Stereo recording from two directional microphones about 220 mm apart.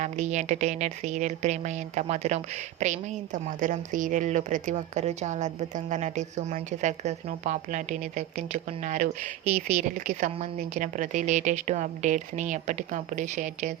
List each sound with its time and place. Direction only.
0.0 s a woman's voice: 30° right (ahead or behind)